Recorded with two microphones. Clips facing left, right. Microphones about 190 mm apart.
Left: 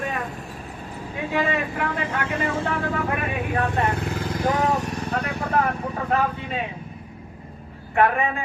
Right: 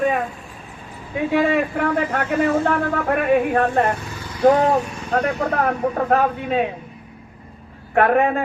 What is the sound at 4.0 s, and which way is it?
Vehicle, 55° left (ahead or behind).